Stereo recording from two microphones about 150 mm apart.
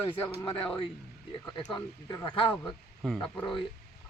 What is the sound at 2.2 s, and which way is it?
Speech, 35° left (ahead or behind).